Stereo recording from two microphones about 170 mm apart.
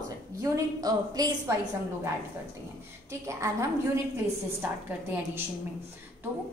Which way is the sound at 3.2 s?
15° right (ahead or behind).